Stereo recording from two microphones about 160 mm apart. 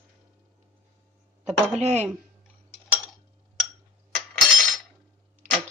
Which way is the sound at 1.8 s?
45° right (ahead or behind).